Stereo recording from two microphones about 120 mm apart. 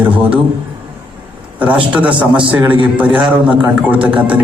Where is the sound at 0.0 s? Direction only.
10° right (ahead or behind).